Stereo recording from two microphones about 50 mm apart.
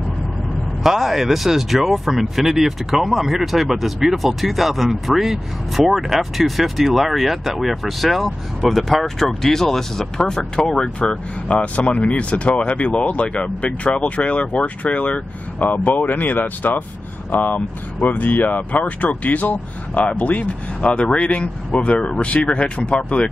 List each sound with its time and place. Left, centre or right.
0.8 s speech: centre; by 23.2 s left